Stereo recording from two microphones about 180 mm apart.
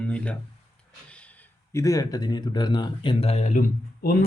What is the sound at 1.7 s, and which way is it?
Speech, 15° left (ahead or behind).